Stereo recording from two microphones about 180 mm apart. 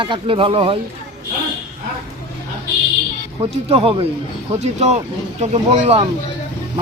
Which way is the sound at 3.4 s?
30° right (ahead or behind).